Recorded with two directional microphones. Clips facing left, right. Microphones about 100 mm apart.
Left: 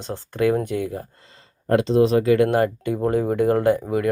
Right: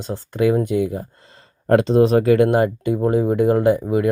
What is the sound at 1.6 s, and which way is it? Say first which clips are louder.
Speech: right 3 dB; 40° right (ahead or behind).